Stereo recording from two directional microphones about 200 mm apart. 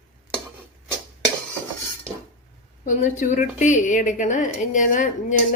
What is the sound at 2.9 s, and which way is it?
A woman's voice, 40° left (ahead or behind).